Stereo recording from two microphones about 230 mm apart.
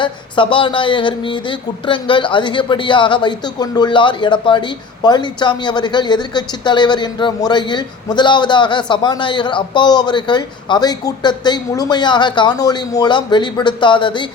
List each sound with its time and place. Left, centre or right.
0.0 s speech: left